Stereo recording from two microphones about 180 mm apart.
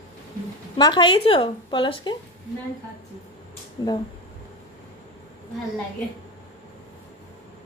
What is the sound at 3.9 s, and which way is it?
Speech, 20° left (ahead or behind).